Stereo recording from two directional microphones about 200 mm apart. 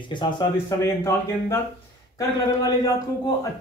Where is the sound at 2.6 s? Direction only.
20° left (ahead or behind).